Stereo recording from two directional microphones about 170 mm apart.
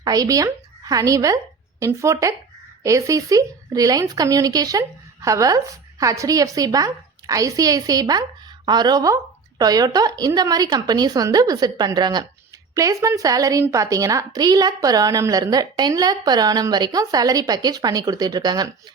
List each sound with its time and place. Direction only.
0.0 s a woman's voice: 20° right (ahead or behind)